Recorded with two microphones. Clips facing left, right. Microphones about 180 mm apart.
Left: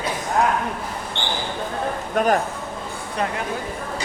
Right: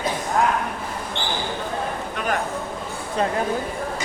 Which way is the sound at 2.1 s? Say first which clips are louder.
Left 9 dB; 40° left (ahead or behind).